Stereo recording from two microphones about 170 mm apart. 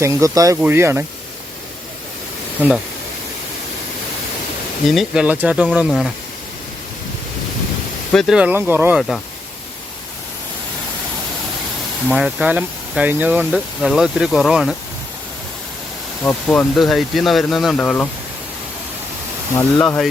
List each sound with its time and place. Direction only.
0.0 s speech: 20° right (ahead or behind)
2.6 s speech: 5° right (ahead or behind)
4.9 s speech: centre (ahead or behind)
8.1 s speech: centre (ahead or behind)
9.0 s speech: centre (ahead or behind)
12.0 s speech: 5° right (ahead or behind)
16.2 s speech: 10° left (ahead or behind)
19.5 s speech: 15° left (ahead or behind)